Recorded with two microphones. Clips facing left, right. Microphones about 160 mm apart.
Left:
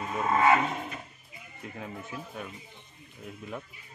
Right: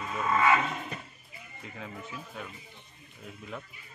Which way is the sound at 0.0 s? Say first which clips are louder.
Left 2 dB; 25° left (ahead or behind).